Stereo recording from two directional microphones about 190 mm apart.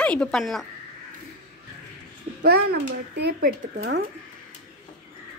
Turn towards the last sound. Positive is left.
turn(degrees=-60)  # may be behind; listen again after turning